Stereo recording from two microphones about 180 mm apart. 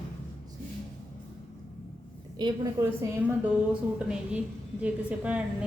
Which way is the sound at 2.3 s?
25° right (ahead or behind).